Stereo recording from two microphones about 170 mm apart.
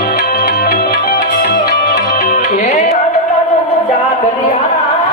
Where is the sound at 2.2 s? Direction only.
45° left (ahead or behind).